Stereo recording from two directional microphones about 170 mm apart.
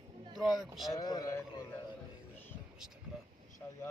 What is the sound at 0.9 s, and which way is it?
Speech, 20° left (ahead or behind).